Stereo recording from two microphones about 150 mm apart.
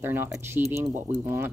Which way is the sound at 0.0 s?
15° right (ahead or behind).